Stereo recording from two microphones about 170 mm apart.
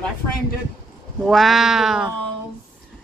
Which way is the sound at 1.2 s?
Centre (ahead or behind).